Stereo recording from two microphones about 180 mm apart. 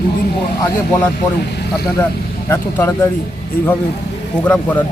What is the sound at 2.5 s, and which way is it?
Speech, 15° left (ahead or behind).